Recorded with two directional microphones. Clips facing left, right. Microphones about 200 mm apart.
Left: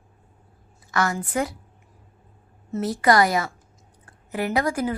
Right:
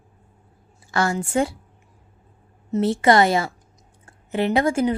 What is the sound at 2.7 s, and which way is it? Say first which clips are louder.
A woman's voice: right 3 dB; 25° right (ahead or behind).